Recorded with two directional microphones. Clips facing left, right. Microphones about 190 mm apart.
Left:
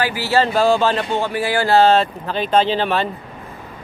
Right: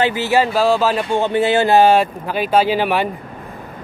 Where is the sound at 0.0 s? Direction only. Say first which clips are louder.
Right 2 dB; 20° right (ahead or behind).